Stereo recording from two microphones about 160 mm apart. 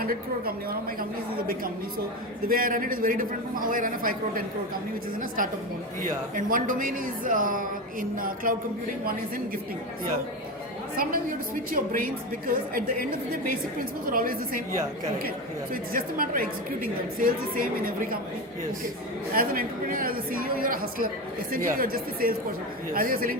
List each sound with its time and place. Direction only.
0.0 s a woman's voice: 65° right (ahead or behind)
2.5 s a woman's voice: 60° right (ahead or behind)
6.0 s a woman's voice: 60° right (ahead or behind)
10.9 s a woman's voice: 65° right (ahead or behind)
15.7 s a woman's voice: 60° right (ahead or behind)
19.3 s a woman's voice: 60° right (ahead or behind)